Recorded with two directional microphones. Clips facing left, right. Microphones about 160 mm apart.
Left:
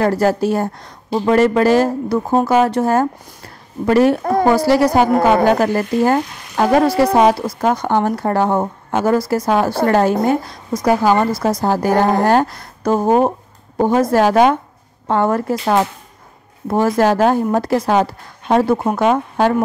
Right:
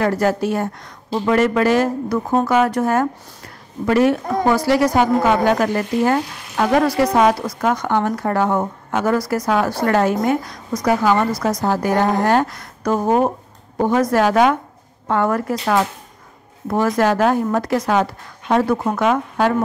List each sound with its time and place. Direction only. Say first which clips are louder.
0.0 s frying: left 3 dB; 35° left (ahead or behind)
1.1 s speech: left 3 dB; 30° left (ahead or behind)
3.8 s frying: left 3 dB; 35° left (ahead or behind)
4.2 s a woman's voice: left 5 dB; 60° left (ahead or behind)
4.5 s frying: left 2 dB; 35° left (ahead or behind)
13.7 s speech: left 2 dB; 30° left (ahead or behind)
16.6 s frying: left 3 dB; 30° left (ahead or behind)
18.5 s speech: left 3 dB; 30° left (ahead or behind)